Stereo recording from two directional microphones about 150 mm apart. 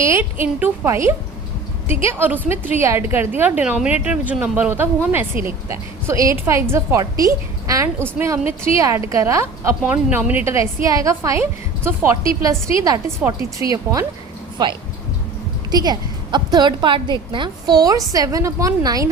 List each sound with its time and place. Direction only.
0.0 s a woman's voice: 15° right (ahead or behind)